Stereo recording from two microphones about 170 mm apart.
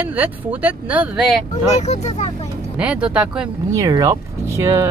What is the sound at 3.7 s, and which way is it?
Speech, 20° right (ahead or behind).